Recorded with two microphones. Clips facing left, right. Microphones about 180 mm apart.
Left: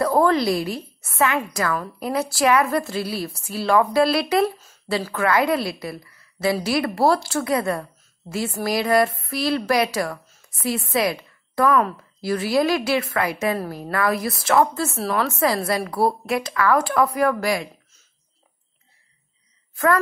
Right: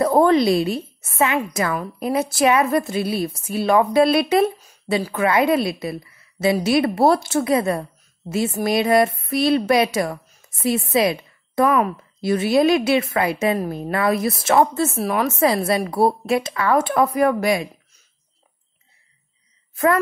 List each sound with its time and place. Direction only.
0.0 s a woman's voice: 20° right (ahead or behind)
19.7 s speech: 20° right (ahead or behind)